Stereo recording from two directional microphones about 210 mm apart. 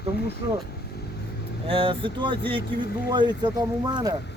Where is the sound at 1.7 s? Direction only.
25° right (ahead or behind).